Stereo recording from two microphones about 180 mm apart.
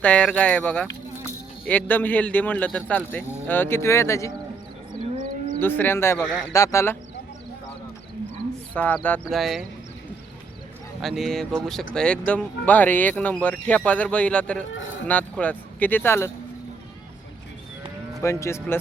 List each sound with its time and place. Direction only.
0.0 s speech: 5° left (ahead or behind)
5.5 s speech: 10° left (ahead or behind)
8.7 s speech: 10° left (ahead or behind)
11.0 s speech: centre (ahead or behind)
18.2 s speech: 15° left (ahead or behind)